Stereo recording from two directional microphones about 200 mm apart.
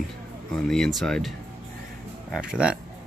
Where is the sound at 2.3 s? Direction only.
5° right (ahead or behind).